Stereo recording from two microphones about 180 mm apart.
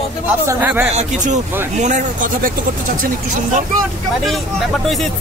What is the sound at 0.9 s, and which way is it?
Speech, 40° right (ahead or behind).